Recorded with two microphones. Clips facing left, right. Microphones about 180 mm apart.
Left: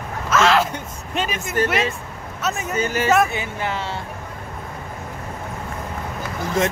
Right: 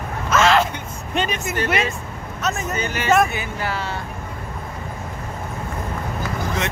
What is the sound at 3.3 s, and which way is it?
Speech, 25° left (ahead or behind).